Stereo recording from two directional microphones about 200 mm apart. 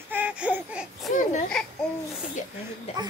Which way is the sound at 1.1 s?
40° left (ahead or behind).